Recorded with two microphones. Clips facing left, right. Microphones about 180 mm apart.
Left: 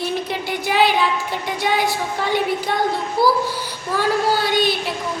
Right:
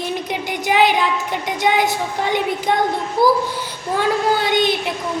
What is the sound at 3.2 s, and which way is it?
Speech, 20° right (ahead or behind).